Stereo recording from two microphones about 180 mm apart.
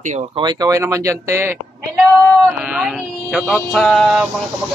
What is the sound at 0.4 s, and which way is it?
Speech, 20° right (ahead or behind).